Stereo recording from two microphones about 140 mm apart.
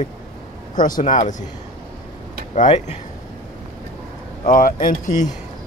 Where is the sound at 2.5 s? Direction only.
55° left (ahead or behind).